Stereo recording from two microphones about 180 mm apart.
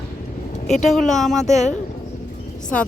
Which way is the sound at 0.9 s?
Centre (ahead or behind).